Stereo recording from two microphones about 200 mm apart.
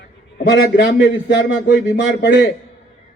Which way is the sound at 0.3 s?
50° left (ahead or behind).